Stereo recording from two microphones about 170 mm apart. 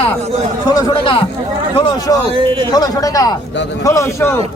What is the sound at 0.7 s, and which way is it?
Speech, 20° left (ahead or behind).